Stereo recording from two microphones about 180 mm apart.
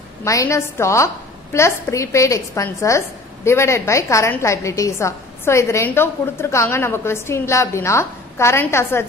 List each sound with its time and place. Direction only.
0.2 s a woman's voice: 15° left (ahead or behind)